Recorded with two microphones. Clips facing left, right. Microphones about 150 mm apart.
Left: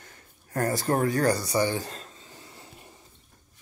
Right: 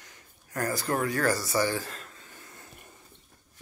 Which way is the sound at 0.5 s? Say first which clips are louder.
Left 4 dB; 35° left (ahead or behind).